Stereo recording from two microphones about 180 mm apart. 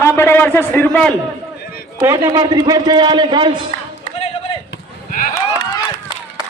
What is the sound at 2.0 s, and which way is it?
A man's voice, 15° right (ahead or behind).